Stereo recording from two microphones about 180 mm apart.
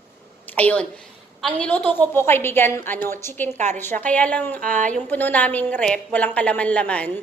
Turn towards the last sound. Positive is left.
turn(degrees=10)  # may be behind; listen again after turning